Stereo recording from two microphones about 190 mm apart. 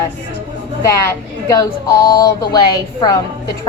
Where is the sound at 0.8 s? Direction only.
15° left (ahead or behind).